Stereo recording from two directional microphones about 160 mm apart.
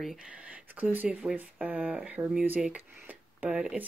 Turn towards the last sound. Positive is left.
turn(degrees=-5)  # may be behind; listen again after turning